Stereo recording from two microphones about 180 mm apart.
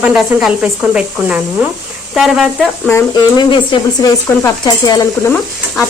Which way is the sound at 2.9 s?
25° left (ahead or behind).